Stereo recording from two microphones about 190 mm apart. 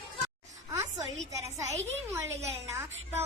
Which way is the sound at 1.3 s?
15° right (ahead or behind).